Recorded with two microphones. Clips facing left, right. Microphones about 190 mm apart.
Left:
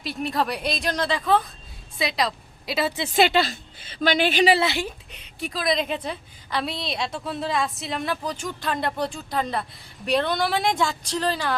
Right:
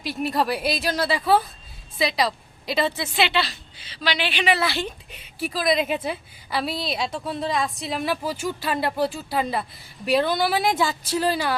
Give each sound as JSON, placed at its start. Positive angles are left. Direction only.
{"t": 0.0, "sound": "a woman's voice", "side_deg": 0}
{"t": 3.2, "sound": "a woman's voice", "side_deg": 45}
{"t": 4.5, "sound": "a woman's voice", "side_deg": 25}
{"t": 5.1, "sound": "a woman's voice", "side_deg": -5}